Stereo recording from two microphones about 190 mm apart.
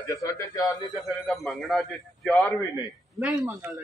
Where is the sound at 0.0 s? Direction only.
15° left (ahead or behind).